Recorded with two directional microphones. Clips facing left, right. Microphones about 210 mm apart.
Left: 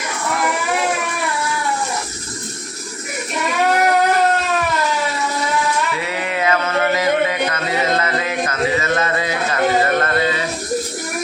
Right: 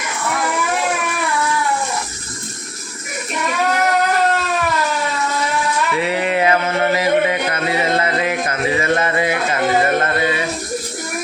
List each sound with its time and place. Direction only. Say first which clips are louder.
6.0 s music: right 4 dB; 25° right (ahead or behind)